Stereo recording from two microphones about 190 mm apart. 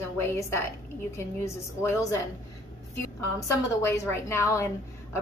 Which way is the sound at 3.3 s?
15° left (ahead or behind).